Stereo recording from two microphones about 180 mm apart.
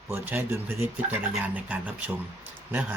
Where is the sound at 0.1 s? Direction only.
15° right (ahead or behind).